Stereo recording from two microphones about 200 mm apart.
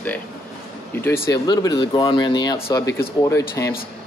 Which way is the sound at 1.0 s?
10° left (ahead or behind).